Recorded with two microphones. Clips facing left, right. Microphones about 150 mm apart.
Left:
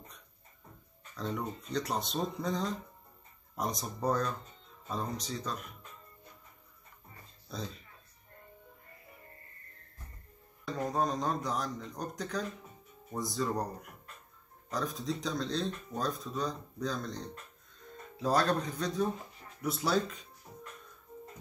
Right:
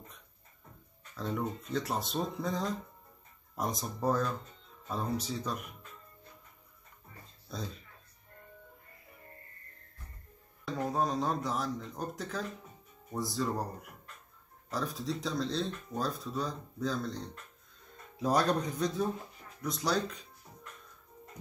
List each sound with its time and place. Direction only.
1.1 s speech: 5° right (ahead or behind)
7.4 s speech: centre (ahead or behind)
10.7 s speech: 5° right (ahead or behind)
14.7 s speech: centre (ahead or behind)
18.2 s speech: 10° right (ahead or behind)
19.6 s speech: 5° left (ahead or behind)
20.5 s music: 20° left (ahead or behind)